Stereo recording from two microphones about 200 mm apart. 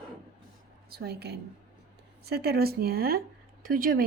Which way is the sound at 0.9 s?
50° right (ahead or behind).